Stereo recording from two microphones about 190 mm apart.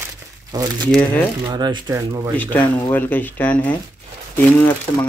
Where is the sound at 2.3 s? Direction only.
10° left (ahead or behind).